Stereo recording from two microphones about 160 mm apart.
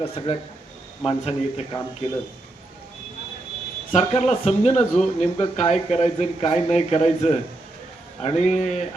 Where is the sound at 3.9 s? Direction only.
40° left (ahead or behind).